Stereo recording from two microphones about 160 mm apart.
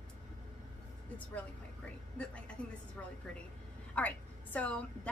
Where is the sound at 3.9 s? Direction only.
10° left (ahead or behind).